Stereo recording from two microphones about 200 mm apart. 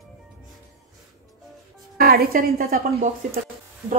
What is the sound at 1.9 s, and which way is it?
Speech, 50° right (ahead or behind).